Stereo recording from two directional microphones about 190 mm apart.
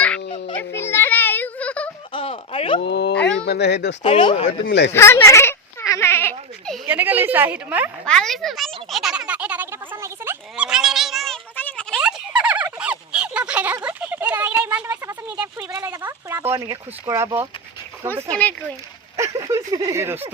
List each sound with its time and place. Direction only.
0.3 s music: 30° left (ahead or behind)
0.7 s music: 15° left (ahead or behind)
2.1 s a sound: 30° left (ahead or behind)
2.8 s speech: 65° left (ahead or behind)
4.0 s speech: 25° left (ahead or behind)
4.6 s speech: 65° left (ahead or behind)
4.9 s a sound: 15° left (ahead or behind)
6.8 s speech: 10° right (ahead or behind)
8.0 s a sound: 5° left (ahead or behind)
12.4 s fowl: 5° right (ahead or behind)
12.8 s a sound: 5° right (ahead or behind)
14.8 s speech: 15° right (ahead or behind)